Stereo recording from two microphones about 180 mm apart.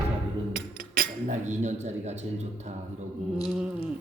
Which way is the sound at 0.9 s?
40° right (ahead or behind).